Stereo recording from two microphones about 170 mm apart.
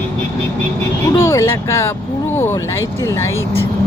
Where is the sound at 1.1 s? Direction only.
15° left (ahead or behind).